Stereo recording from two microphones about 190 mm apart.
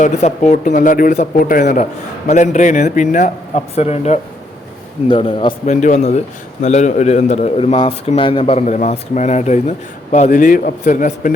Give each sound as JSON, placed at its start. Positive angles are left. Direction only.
{"t": 0.0, "sound": "a man's voice", "side_deg": 35}
{"t": 5.8, "sound": "a man's voice", "side_deg": 35}